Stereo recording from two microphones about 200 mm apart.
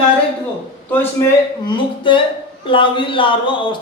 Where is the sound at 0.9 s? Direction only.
10° left (ahead or behind).